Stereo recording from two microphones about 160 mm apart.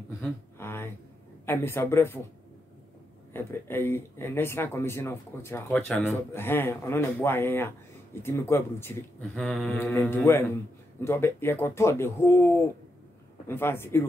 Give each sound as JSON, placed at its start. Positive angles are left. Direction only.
{"t": 0.6, "sound": "a man's voice", "side_deg": 15}
{"t": 3.3, "sound": "a man's voice", "side_deg": 15}